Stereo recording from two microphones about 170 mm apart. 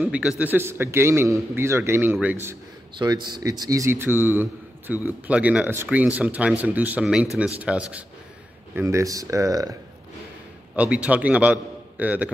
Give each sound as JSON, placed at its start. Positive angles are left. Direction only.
{"t": 0.0, "sound": "a man's voice", "side_deg": -5}
{"t": 3.0, "sound": "a man's voice", "side_deg": -25}
{"t": 8.7, "sound": "speech", "side_deg": -20}
{"t": 10.8, "sound": "a man's voice", "side_deg": -10}